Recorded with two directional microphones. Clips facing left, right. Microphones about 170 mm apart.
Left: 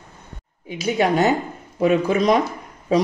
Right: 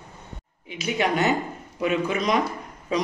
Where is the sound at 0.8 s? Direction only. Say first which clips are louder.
Left 5 dB; 35° left (ahead or behind).